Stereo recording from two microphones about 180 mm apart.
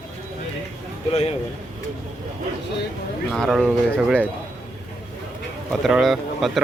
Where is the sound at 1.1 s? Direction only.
35° left (ahead or behind).